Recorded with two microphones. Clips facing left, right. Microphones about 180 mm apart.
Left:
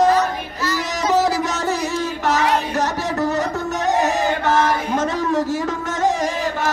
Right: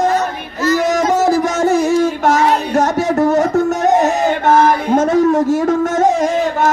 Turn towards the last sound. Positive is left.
turn(degrees=-50)  # may be behind; listen again after turning